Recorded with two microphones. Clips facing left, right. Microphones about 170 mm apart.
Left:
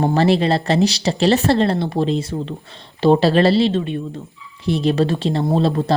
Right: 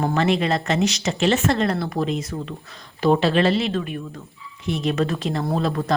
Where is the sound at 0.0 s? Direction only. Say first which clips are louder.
Left 5 dB; 35° left (ahead or behind).